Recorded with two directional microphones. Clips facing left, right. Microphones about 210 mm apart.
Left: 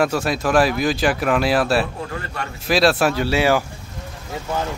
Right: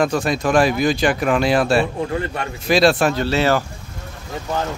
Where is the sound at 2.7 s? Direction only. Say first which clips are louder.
Right 2 dB; centre (ahead or behind).